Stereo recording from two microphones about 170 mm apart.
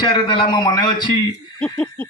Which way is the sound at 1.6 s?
10° left (ahead or behind).